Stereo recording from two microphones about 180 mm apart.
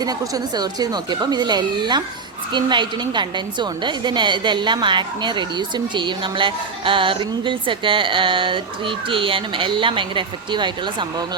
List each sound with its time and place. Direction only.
0.0 s a woman's voice: 20° right (ahead or behind)